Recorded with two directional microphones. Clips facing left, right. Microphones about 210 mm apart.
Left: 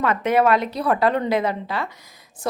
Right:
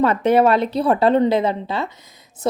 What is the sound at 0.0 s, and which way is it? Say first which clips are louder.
A woman's voice: right 4 dB; 30° right (ahead or behind).